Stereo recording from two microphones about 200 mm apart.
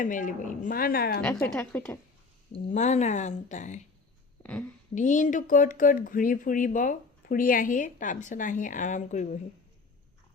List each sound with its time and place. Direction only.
0.0 s a woman's voice: 40° left (ahead or behind)
1.2 s a woman's voice: 10° left (ahead or behind)
2.5 s speech: 35° left (ahead or behind)
4.9 s speech: 40° left (ahead or behind)